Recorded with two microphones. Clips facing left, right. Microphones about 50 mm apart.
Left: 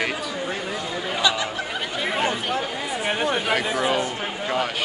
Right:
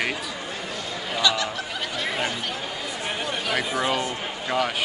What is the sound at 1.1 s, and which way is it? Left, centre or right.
Chatter, centre.